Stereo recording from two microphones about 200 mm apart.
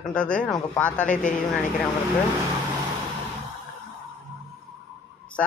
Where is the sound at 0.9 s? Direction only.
40° left (ahead or behind).